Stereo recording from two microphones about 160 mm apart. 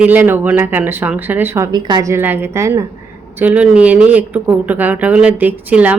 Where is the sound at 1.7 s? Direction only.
25° right (ahead or behind).